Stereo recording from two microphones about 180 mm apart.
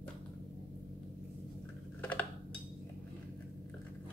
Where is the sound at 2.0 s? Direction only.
10° left (ahead or behind).